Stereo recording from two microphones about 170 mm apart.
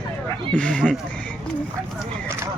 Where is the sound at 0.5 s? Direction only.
5° left (ahead or behind).